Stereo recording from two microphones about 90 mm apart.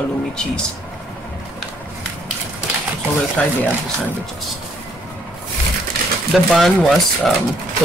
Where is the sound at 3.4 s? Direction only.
10° left (ahead or behind).